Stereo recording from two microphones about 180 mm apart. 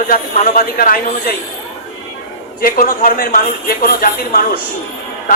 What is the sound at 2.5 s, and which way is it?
A man's voice, 50° left (ahead or behind).